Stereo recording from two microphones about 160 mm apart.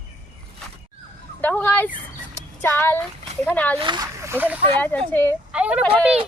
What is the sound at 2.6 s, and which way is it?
Speech, 15° left (ahead or behind).